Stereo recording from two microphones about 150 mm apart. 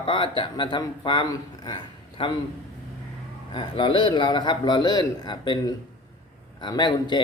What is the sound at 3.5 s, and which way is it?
Speech, 30° left (ahead or behind).